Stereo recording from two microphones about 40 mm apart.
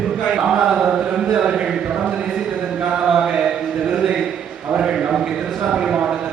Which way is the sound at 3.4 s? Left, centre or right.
Centre.